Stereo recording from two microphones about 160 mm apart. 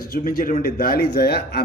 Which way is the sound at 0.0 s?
65° left (ahead or behind).